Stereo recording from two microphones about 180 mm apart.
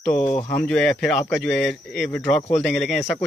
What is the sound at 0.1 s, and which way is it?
Speech, 35° left (ahead or behind).